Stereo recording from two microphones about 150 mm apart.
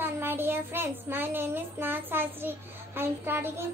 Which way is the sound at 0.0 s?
15° right (ahead or behind).